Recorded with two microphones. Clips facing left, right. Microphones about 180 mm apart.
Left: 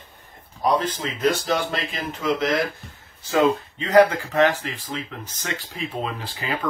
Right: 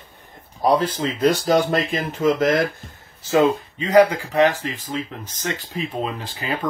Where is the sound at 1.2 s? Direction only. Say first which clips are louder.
Right 5 dB; 35° right (ahead or behind).